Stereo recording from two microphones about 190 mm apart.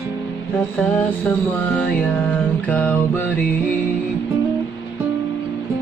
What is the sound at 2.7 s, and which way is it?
Music, 10° left (ahead or behind).